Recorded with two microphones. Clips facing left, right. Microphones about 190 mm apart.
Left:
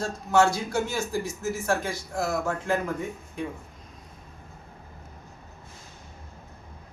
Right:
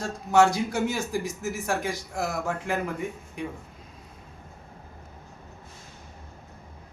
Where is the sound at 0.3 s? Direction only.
15° right (ahead or behind).